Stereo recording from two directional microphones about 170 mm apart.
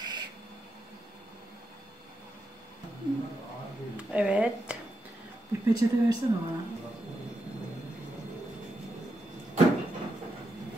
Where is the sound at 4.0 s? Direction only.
5° right (ahead or behind).